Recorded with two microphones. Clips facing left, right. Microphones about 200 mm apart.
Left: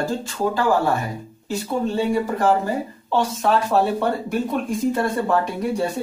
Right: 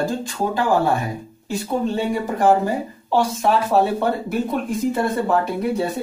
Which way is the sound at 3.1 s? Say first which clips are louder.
Right 1 dB; 10° right (ahead or behind).